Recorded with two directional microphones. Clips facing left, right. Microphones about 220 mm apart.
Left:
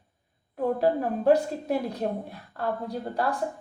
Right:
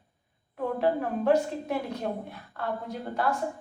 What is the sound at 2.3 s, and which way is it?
Speech, 35° left (ahead or behind).